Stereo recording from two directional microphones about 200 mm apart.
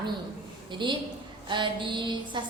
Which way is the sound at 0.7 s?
25° right (ahead or behind).